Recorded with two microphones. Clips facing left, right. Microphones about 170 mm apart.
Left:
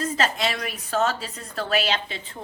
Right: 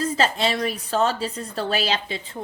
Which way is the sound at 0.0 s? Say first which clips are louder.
Right 3 dB; 30° right (ahead or behind).